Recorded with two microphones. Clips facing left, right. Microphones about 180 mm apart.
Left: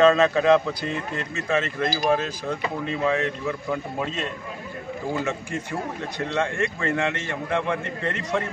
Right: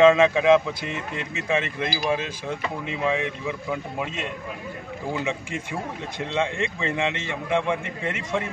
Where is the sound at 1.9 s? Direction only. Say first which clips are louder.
Left 3 dB; 45° left (ahead or behind).